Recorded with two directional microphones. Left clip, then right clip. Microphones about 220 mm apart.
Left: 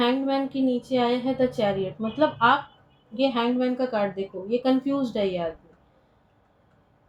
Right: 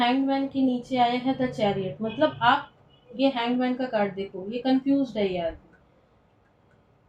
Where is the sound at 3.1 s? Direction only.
50° left (ahead or behind).